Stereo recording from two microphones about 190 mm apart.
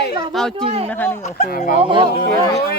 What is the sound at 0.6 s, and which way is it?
Speech, 30° right (ahead or behind).